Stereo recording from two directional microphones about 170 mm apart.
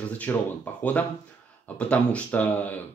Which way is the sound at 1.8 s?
5° left (ahead or behind).